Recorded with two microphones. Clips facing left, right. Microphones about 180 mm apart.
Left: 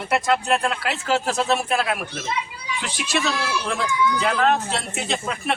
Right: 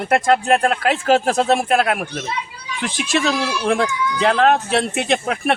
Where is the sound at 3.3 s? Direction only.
60° right (ahead or behind).